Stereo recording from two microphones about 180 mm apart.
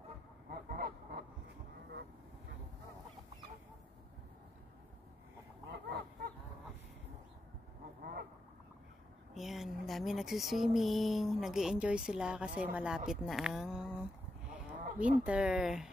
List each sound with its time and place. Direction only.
0.5 s fowl: 55° right (ahead or behind)
5.7 s duck: 60° right (ahead or behind)
8.0 s duck: 55° right (ahead or behind)
9.3 s speech: centre (ahead or behind)